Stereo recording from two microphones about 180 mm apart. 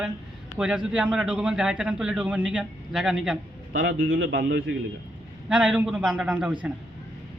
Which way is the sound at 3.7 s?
90° right.